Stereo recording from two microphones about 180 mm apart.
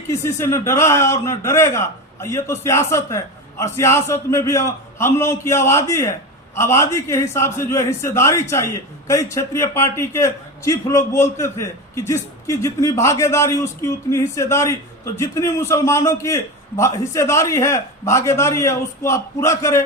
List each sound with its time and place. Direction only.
0.1 s a man's voice: 15° left (ahead or behind)